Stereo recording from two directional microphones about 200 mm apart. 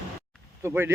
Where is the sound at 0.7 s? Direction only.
10° right (ahead or behind).